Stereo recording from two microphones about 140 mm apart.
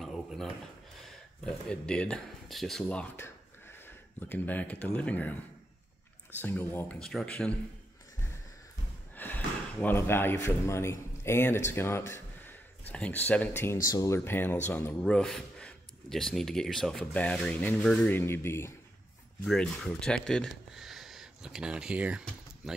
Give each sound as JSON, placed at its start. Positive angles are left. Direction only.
{"t": 0.0, "sound": "drawer open or close", "side_deg": 0}
{"t": 1.0, "sound": "speech", "side_deg": 5}
{"t": 6.4, "sound": "a man's voice", "side_deg": 15}
{"t": 7.0, "sound": "speech", "side_deg": 5}
{"t": 9.1, "sound": "a man's voice", "side_deg": 15}
{"t": 19.4, "sound": "speech", "side_deg": 5}